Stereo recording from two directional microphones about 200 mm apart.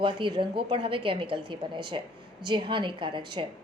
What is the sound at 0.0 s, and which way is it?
A woman's voice, 25° right (ahead or behind).